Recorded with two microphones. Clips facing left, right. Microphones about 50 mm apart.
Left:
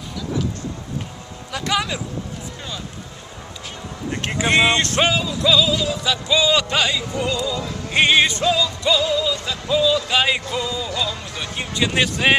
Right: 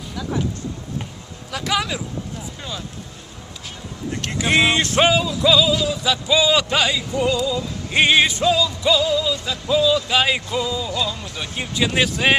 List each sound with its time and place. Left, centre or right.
1.5 s vehicle: centre
4.1 s speech: left
4.4 s music: centre